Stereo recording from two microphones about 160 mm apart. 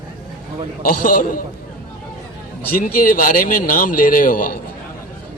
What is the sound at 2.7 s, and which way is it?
A man's voice, 60° left (ahead or behind).